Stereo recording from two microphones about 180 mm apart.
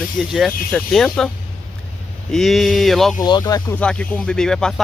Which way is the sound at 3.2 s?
20° left (ahead or behind).